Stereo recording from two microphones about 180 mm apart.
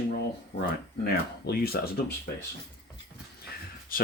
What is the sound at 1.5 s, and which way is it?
Speech, 60° left (ahead or behind).